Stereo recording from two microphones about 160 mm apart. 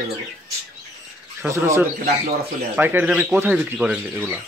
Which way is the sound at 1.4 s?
15° right (ahead or behind).